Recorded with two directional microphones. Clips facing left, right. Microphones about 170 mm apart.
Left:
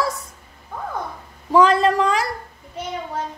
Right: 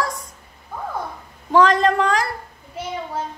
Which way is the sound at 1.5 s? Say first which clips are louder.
Even; 5° left (ahead or behind).